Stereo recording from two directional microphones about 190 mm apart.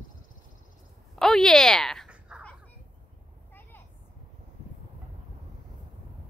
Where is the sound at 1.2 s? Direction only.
Centre (ahead or behind).